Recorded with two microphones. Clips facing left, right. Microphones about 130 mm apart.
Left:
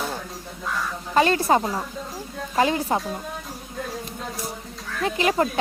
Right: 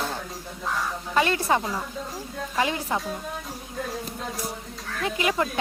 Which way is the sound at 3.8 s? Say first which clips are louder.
Even; centre (ahead or behind).